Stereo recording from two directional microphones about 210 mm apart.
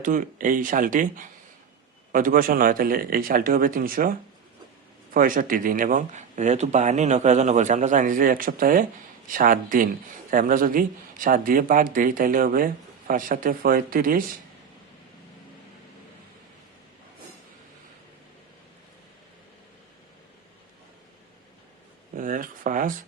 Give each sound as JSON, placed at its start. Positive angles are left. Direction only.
{"t": 0.0, "sound": "speech", "side_deg": -40}
{"t": 5.1, "sound": "speech", "side_deg": -40}
{"t": 22.1, "sound": "speech", "side_deg": -40}